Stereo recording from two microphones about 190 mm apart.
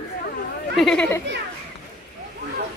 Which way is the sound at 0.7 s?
Centre (ahead or behind).